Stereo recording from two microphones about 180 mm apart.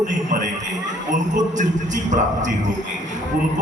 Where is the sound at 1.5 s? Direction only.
45° right (ahead or behind).